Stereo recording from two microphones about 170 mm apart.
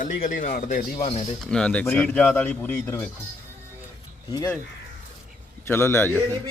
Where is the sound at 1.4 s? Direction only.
5° left (ahead or behind).